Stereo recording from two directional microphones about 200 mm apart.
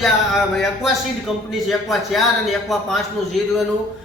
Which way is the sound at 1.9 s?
Centre (ahead or behind).